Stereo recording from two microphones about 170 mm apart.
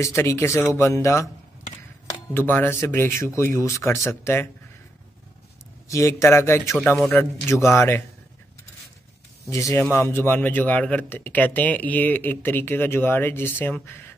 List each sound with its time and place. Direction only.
0.0 s speech: 15° left (ahead or behind)
2.3 s speech: 10° left (ahead or behind)
5.9 s speech: 15° left (ahead or behind)
9.5 s speech: 20° left (ahead or behind)